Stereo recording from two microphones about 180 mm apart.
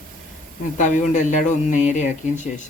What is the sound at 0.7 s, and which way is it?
Speech, 45° left (ahead or behind).